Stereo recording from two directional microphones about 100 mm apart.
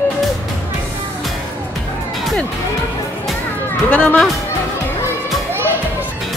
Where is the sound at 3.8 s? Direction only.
15° left (ahead or behind).